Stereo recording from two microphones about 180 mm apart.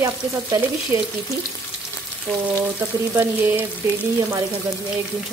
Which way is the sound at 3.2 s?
10° right (ahead or behind).